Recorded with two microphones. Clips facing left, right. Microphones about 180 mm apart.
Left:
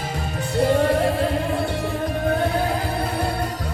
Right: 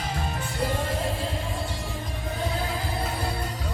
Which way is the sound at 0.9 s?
65° left (ahead or behind).